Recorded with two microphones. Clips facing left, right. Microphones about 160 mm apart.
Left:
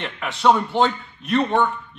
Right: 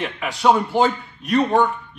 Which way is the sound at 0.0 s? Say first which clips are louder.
Even; centre (ahead or behind).